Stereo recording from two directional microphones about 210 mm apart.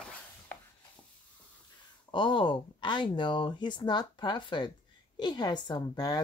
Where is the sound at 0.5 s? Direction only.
10° left (ahead or behind).